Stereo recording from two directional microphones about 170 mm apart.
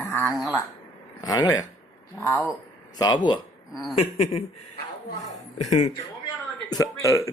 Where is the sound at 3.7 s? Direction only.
Centre (ahead or behind).